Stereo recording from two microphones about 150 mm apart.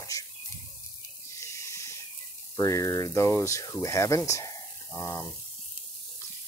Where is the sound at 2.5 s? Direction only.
20° left (ahead or behind).